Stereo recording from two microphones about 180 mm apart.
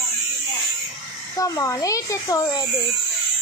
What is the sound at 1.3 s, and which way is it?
A woman's voice, 20° left (ahead or behind).